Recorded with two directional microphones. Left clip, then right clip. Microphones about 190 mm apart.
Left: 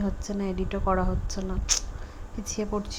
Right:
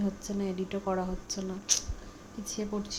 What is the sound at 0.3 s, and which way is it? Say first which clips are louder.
A woman's voice: left 4 dB; 15° left (ahead or behind).